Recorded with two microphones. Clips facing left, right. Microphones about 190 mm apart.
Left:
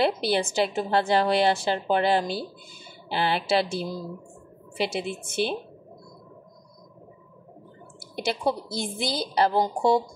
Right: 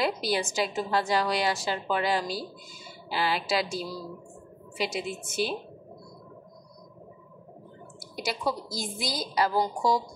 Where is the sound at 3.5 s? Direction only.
30° left (ahead or behind).